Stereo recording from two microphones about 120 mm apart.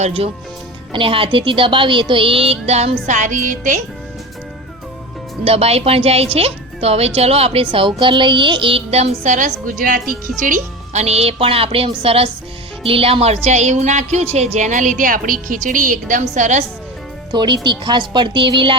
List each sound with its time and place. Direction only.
0.0 s a woman's voice: 55° right (ahead or behind); by 3.8 s 90° right
5.5 s a woman's voice: 55° right (ahead or behind); by 16.6 s 75° right (ahead or behind)
17.3 s speech: 40° right (ahead or behind)